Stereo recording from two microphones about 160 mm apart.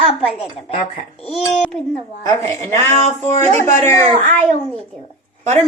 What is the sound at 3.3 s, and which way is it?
Speech, 45° right (ahead or behind).